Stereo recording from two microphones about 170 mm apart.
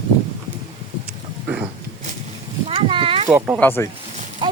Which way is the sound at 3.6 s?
10° left (ahead or behind).